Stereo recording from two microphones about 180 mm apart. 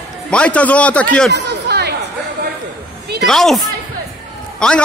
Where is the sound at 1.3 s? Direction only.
70° right (ahead or behind).